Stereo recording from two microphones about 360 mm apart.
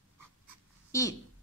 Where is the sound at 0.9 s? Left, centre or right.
Centre.